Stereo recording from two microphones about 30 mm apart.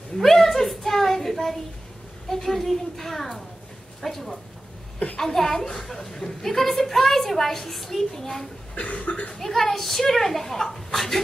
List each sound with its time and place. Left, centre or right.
0.2 s a sound: centre
2.2 s a woman's voice: centre
8.7 s cough: left
9.4 s a woman's voice: centre